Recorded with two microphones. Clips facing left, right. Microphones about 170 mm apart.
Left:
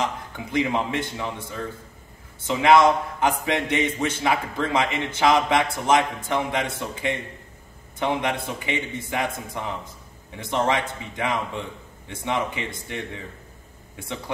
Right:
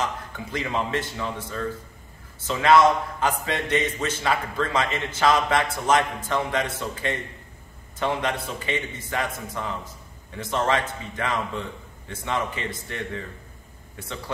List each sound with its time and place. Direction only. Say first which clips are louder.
0.5 s a man's voice: left 3 dB; 15° left (ahead or behind)